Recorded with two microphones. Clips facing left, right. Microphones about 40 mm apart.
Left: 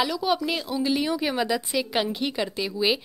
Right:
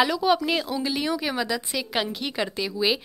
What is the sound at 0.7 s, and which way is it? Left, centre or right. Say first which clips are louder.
Speech: left 1 dB; centre.